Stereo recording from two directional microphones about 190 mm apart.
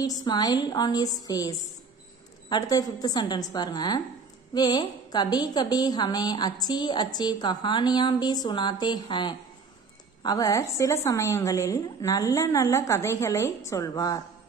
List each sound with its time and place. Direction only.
0.0 s a woman's voice: 20° left (ahead or behind)